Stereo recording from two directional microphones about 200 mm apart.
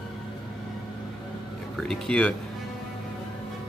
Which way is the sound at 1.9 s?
5° left (ahead or behind).